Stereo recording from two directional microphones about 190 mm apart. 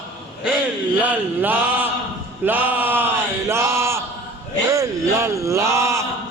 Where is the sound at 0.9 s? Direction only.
10° right (ahead or behind).